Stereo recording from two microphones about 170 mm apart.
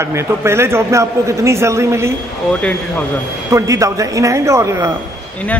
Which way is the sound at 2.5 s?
5° left (ahead or behind).